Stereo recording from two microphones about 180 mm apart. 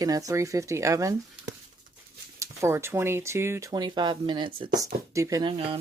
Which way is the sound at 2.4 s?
15° right (ahead or behind).